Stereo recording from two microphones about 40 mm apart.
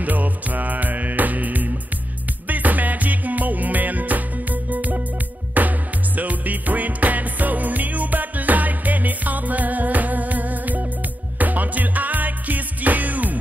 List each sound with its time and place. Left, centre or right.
0.0 s music: right